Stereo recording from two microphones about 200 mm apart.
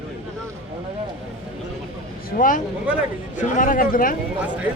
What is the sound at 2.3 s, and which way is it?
Speech, 40° left (ahead or behind).